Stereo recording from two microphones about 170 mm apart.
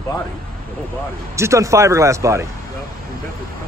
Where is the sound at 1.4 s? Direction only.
20° right (ahead or behind).